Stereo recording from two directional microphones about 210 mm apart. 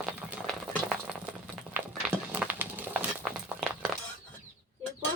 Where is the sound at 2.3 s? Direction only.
5° right (ahead or behind).